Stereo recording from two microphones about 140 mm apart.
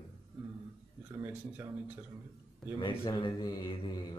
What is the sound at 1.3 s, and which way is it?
Speech, 15° right (ahead or behind).